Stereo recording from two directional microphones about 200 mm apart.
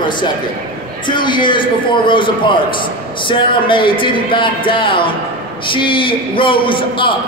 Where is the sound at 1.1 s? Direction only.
25° left (ahead or behind).